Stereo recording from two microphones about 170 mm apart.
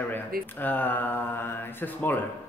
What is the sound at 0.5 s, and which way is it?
Speech, 10° left (ahead or behind).